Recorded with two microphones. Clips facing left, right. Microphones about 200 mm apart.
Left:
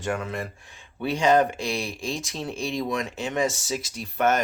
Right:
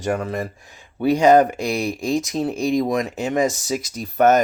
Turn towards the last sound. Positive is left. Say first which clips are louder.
# right 7 dB
turn(degrees=-40)  # may be behind; listen again after turning